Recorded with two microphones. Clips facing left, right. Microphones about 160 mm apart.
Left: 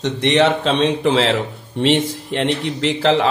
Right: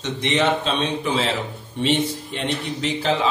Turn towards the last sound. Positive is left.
turn(degrees=85)